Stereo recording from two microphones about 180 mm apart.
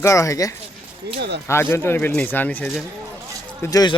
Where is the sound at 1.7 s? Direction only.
15° left (ahead or behind).